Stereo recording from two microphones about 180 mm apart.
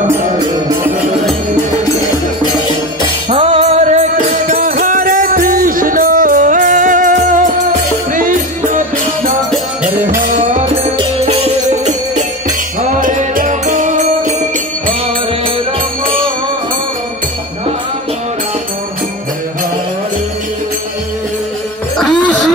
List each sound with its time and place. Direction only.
3.3 s music: 35° right (ahead or behind)
10.6 s music: 30° right (ahead or behind)